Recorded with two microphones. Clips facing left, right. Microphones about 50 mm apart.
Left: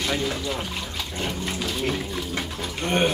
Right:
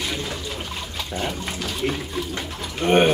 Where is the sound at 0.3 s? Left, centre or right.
Centre.